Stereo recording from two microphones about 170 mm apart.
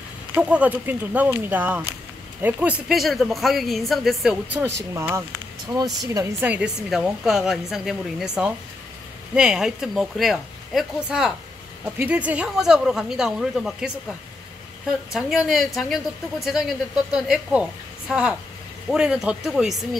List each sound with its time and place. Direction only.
0.3 s a woman's voice: 10° right (ahead or behind)
4.9 s a woman's voice: 15° right (ahead or behind)